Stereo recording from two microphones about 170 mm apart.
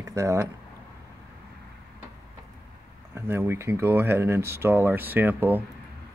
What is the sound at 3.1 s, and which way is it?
Speech, 15° right (ahead or behind).